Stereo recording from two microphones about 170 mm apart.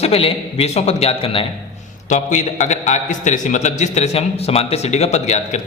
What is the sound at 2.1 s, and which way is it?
A man's voice, 45° left (ahead or behind).